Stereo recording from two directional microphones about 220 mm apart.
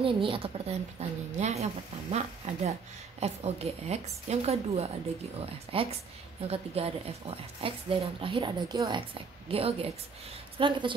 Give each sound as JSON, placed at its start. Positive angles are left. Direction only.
{"t": 0.0, "sound": "speech", "side_deg": -25}